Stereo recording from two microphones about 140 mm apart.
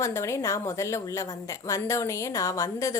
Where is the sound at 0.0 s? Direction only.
20° left (ahead or behind).